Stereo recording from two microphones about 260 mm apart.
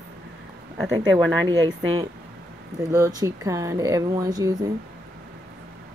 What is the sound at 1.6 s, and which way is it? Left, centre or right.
Speech, centre.